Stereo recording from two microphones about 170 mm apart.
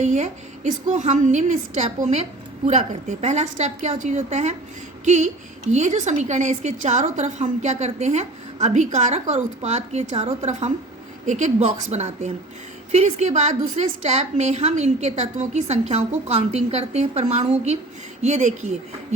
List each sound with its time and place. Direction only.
0.0 s a woman's voice: 45° right (ahead or behind)